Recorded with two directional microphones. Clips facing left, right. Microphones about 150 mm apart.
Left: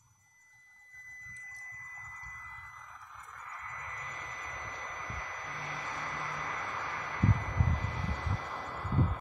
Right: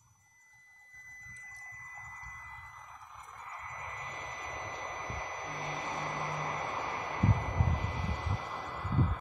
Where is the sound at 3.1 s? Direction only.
20° right (ahead or behind).